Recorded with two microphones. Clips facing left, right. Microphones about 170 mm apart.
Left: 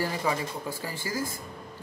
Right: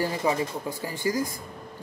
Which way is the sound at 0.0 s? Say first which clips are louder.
Right 3 dB; 20° right (ahead or behind).